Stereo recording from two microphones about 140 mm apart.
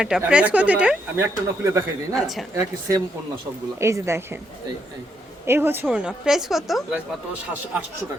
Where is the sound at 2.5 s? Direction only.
25° right (ahead or behind).